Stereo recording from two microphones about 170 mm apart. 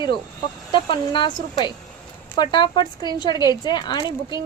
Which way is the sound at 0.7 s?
30° left (ahead or behind).